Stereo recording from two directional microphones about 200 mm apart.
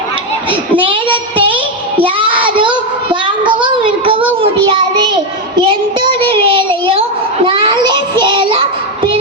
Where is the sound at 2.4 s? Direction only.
25° right (ahead or behind).